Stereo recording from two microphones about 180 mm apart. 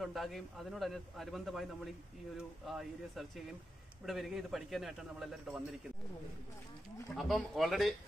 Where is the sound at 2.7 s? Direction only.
Centre (ahead or behind).